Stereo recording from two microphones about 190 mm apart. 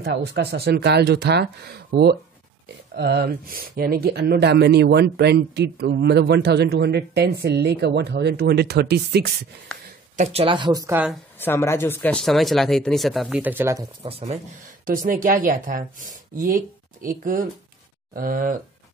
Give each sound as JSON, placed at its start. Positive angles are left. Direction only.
{"t": 0.0, "sound": "speech", "side_deg": -60}
{"t": 10.1, "sound": "speech", "side_deg": -35}
{"t": 11.3, "sound": "speech", "side_deg": 10}
{"t": 14.0, "sound": "speech", "side_deg": -35}
{"t": 14.9, "sound": "speech", "side_deg": -45}